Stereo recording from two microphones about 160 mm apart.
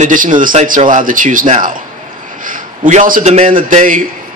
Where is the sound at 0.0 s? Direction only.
55° right (ahead or behind).